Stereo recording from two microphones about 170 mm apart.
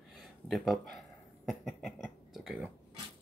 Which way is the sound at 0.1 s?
Centre (ahead or behind).